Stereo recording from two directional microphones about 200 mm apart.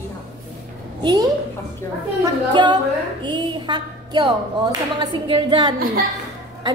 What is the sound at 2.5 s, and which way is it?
A woman's voice, 20° right (ahead or behind).